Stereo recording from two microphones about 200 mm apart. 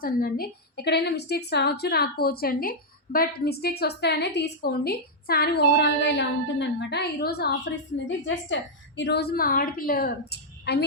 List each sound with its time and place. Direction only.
0.0 s a woman's voice: 45° left (ahead or behind)